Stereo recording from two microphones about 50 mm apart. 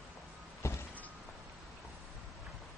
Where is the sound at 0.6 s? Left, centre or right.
Left.